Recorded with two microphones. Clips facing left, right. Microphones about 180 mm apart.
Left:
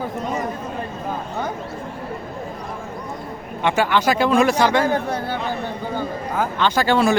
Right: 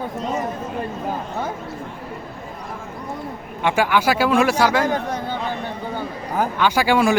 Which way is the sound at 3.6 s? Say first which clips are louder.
Even; 10° right (ahead or behind).